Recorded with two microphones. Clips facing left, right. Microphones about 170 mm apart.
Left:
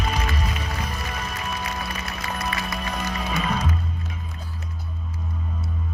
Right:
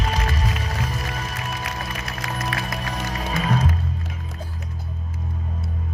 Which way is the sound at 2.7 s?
45° right (ahead or behind).